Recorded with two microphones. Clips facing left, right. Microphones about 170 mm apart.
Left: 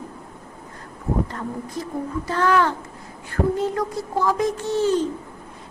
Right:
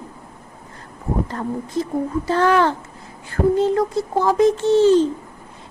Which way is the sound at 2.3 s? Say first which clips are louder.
Right 3 dB; 30° right (ahead or behind).